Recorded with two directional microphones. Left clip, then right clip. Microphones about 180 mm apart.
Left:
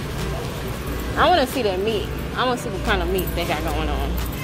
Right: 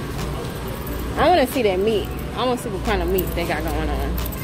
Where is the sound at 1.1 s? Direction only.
35° right (ahead or behind).